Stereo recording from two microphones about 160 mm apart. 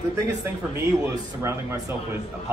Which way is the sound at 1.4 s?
15° right (ahead or behind).